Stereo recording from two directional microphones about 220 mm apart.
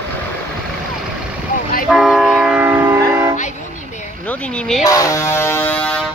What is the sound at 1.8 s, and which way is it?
Train, centre (ahead or behind).